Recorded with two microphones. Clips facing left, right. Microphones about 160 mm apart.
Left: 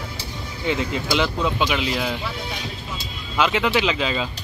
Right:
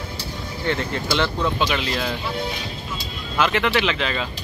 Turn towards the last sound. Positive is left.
turn(degrees=10)  # may be behind; listen again after turning